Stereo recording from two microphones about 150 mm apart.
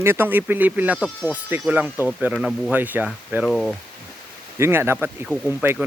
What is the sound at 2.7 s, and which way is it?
Speech, 10° right (ahead or behind).